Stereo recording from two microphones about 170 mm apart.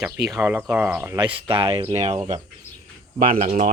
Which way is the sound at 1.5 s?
35° right (ahead or behind).